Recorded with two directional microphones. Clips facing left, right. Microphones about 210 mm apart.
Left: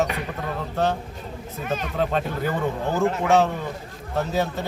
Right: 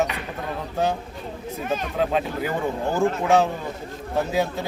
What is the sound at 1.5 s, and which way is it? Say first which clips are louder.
Speech: right 1 dB; 5° right (ahead or behind).